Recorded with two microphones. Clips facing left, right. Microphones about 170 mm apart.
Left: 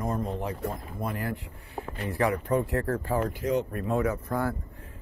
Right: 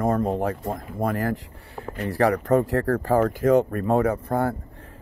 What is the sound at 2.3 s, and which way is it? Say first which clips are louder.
Speech: right 6 dB; 90° right.